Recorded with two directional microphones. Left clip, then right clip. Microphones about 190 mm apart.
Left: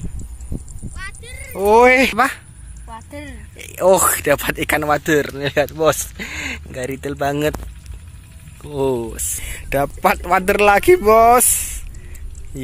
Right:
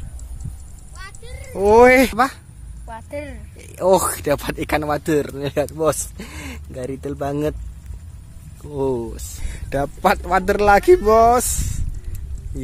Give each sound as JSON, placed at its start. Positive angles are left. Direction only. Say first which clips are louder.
{"t": 0.9, "sound": "a sound", "louder": "left 5 dB", "side_deg": -25}
{"t": 1.5, "sound": "speech", "louder": "even", "side_deg": -15}
{"t": 2.0, "sound": "speech", "louder": "left 2 dB", "side_deg": 0}
{"t": 2.9, "sound": "speech", "louder": "right 3 dB", "side_deg": -20}
{"t": 3.5, "sound": "speech", "louder": "left 2 dB", "side_deg": 0}
{"t": 8.6, "sound": "speech", "louder": "left 3 dB", "side_deg": 0}